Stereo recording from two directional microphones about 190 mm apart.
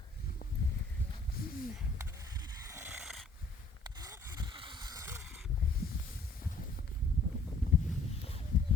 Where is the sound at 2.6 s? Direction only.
15° right (ahead or behind).